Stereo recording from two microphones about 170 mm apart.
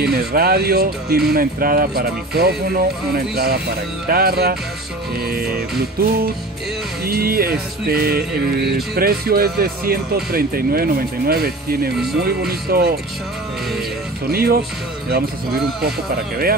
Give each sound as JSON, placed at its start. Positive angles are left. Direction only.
{"t": 0.0, "sound": "speech", "side_deg": -65}
{"t": 14.3, "sound": "speech", "side_deg": -60}